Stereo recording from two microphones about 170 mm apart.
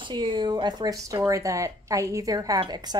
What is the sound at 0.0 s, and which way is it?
A woman's voice, 30° right (ahead or behind).